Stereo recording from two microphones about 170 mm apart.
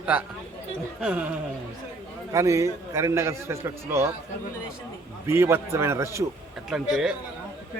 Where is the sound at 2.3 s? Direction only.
20° right (ahead or behind).